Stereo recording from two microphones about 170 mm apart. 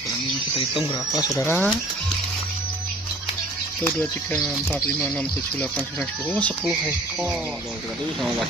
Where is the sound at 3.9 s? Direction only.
Centre (ahead or behind).